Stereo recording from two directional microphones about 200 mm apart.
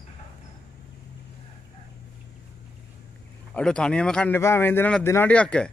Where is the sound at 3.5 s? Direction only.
5° left (ahead or behind).